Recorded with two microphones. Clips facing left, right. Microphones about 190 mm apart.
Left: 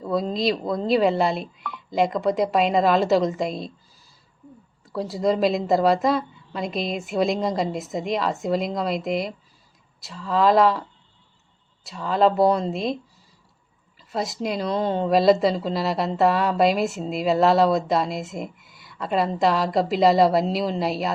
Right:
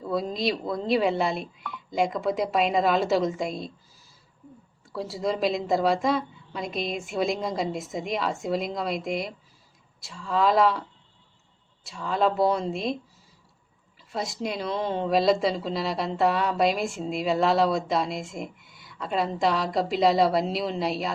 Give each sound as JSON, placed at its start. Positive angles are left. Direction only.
{"t": 0.7, "sound": "speech", "side_deg": 0}
{"t": 4.9, "sound": "speech", "side_deg": 0}
{"t": 11.9, "sound": "speech", "side_deg": 0}
{"t": 14.1, "sound": "speech", "side_deg": 0}